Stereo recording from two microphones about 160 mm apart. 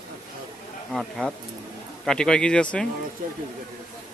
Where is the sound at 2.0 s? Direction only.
5° left (ahead or behind).